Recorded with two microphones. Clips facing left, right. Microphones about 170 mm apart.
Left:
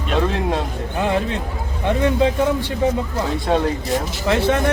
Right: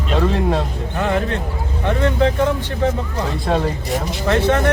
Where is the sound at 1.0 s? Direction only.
15° left (ahead or behind).